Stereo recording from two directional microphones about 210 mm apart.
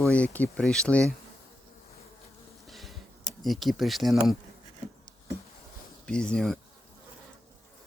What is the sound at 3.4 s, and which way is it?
Speech, centre (ahead or behind).